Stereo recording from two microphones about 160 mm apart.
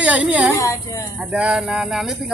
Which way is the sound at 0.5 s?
20° left (ahead or behind).